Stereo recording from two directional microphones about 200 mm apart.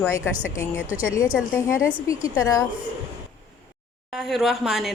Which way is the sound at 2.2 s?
15° left (ahead or behind).